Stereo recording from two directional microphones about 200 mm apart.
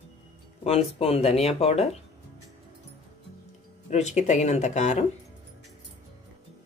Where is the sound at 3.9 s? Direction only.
35° left (ahead or behind).